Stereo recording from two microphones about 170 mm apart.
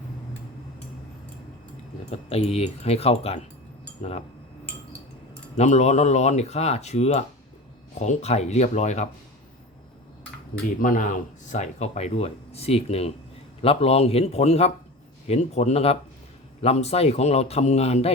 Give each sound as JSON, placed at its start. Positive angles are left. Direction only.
{"t": 2.0, "sound": "speech", "side_deg": 35}
{"t": 5.5, "sound": "speech", "side_deg": 40}
{"t": 10.8, "sound": "speech", "side_deg": 50}